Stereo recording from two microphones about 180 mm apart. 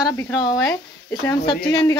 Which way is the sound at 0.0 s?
15° left (ahead or behind).